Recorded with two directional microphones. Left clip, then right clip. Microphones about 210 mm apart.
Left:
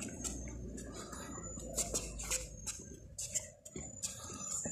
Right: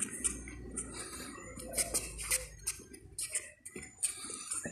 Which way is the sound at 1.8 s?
15° right (ahead or behind).